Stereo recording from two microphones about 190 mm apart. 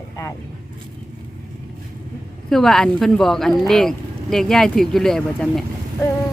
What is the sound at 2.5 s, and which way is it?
Speech, centre (ahead or behind).